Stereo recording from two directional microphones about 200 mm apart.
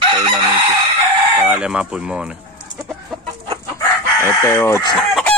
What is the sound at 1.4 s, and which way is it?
Speech, 5° right (ahead or behind).